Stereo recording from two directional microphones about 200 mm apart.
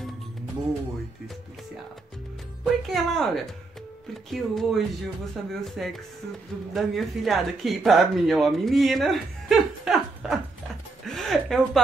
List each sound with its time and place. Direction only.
2.6 s speech: centre (ahead or behind)
4.3 s speech: centre (ahead or behind)
11.1 s music: centre (ahead or behind)